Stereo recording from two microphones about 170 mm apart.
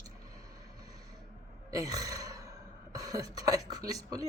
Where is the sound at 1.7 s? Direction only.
20° right (ahead or behind).